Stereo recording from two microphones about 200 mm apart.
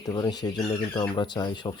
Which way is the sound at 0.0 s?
20° left (ahead or behind).